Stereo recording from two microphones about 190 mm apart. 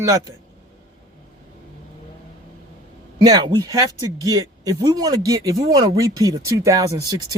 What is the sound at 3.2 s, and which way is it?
Speech, 20° right (ahead or behind).